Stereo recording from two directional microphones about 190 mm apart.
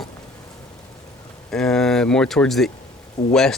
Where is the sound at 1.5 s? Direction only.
5° left (ahead or behind).